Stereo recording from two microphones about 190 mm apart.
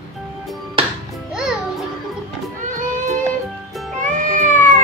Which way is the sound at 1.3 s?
5° right (ahead or behind).